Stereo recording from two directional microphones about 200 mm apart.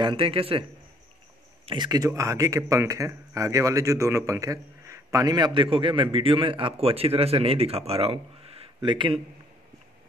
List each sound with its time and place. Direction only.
0.0 s speech: 25° right (ahead or behind)
1.7 s speech: 20° right (ahead or behind)